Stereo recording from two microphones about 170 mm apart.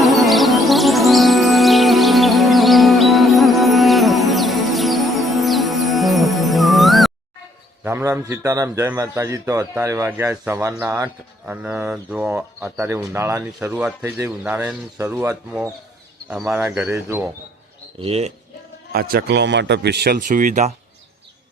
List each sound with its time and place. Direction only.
0.0 s music: centre (ahead or behind)
7.9 s speech: 15° right (ahead or behind)
16.3 s speech: 5° right (ahead or behind)
16.6 s speech: 15° right (ahead or behind)
18.0 s speech: 35° right (ahead or behind)
18.9 s speech: 65° right (ahead or behind)
20.1 s speech: 50° right (ahead or behind)